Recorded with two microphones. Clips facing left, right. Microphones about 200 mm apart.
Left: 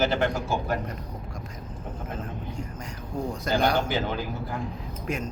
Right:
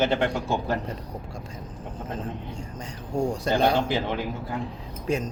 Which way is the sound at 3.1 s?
25° right (ahead or behind).